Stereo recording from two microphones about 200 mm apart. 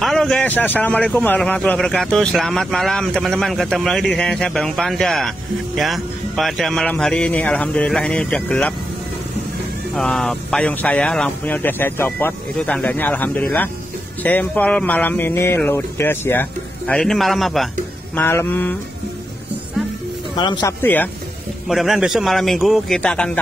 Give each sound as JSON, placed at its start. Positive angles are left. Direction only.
{"t": 0.0, "sound": "speech", "side_deg": 0}
{"t": 9.9, "sound": "speech", "side_deg": 5}
{"t": 18.1, "sound": "speech", "side_deg": 10}
{"t": 20.3, "sound": "speech", "side_deg": 20}
{"t": 20.8, "sound": "speech", "side_deg": 10}